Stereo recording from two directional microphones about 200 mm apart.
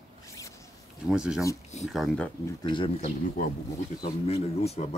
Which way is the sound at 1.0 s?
5° right (ahead or behind).